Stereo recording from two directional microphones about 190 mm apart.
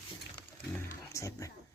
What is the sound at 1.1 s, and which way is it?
Music, 15° left (ahead or behind).